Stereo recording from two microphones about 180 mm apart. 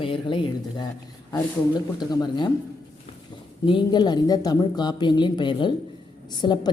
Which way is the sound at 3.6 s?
25° left (ahead or behind).